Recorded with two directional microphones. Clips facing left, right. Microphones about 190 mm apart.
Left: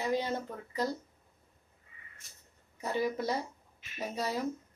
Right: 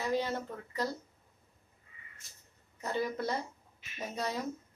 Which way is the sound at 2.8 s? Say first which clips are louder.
Left 2 dB; 10° left (ahead or behind).